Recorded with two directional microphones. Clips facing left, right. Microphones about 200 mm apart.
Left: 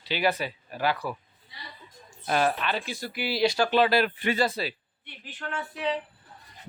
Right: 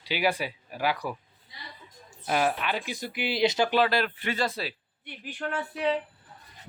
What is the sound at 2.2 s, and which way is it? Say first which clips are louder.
Speech: left 1 dB; 10° right (ahead or behind).